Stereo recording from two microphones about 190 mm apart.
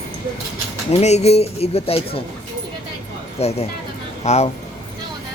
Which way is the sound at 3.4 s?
35° left (ahead or behind).